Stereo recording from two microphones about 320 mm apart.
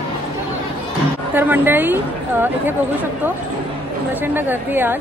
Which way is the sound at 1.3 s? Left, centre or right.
Centre.